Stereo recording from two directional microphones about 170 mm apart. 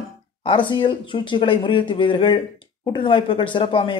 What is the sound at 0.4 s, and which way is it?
A man's voice, 30° left (ahead or behind).